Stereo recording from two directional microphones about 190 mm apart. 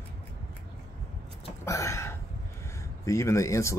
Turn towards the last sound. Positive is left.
turn(degrees=15)  # may be behind; listen again after turning